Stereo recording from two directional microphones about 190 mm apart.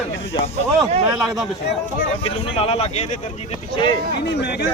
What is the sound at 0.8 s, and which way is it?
Speech, centre (ahead or behind).